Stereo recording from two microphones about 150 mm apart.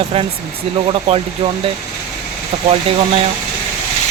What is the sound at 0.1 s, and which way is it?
Speech, 40° right (ahead or behind).